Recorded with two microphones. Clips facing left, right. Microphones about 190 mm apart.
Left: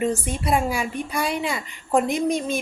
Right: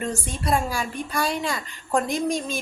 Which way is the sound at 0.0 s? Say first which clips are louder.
Left 4 dB; 5° left (ahead or behind).